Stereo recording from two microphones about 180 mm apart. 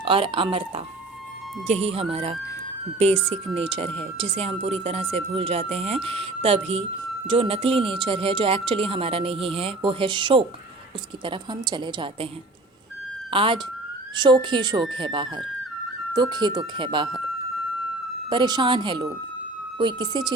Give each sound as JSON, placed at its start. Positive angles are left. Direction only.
{"t": 0.0, "sound": "speech", "side_deg": -30}
{"t": 13.3, "sound": "speech", "side_deg": -30}
{"t": 18.3, "sound": "speech", "side_deg": -25}